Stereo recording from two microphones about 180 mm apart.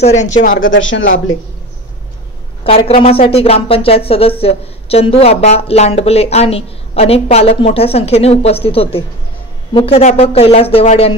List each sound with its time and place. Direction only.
0.0 s speech: 40° left (ahead or behind)
0.6 s speech: 90° left
2.6 s speech: 30° left (ahead or behind)